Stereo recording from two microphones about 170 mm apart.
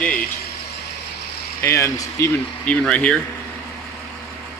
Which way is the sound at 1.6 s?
15° left (ahead or behind).